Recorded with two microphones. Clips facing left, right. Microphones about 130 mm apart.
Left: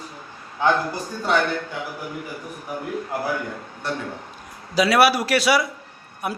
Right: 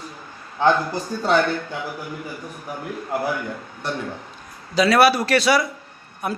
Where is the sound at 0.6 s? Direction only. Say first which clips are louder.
Right 2 dB; 30° right (ahead or behind).